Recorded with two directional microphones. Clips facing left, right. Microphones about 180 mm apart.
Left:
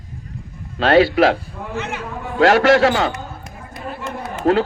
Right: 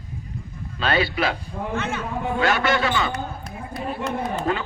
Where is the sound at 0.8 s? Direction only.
90° left.